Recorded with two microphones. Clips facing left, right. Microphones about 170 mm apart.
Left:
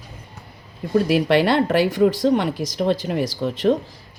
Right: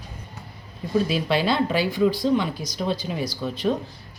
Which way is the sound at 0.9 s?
75° left (ahead or behind).